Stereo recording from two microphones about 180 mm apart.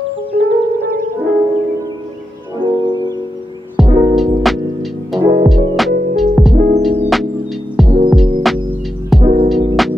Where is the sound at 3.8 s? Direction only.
Centre (ahead or behind).